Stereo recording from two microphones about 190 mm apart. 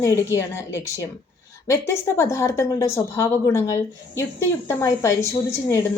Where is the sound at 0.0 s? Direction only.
15° left (ahead or behind).